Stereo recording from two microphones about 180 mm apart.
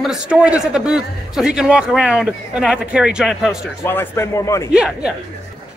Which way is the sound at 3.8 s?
15° left (ahead or behind).